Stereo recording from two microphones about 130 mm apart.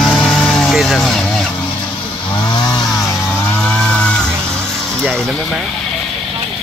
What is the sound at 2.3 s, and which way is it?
Chainsaw, 35° left (ahead or behind).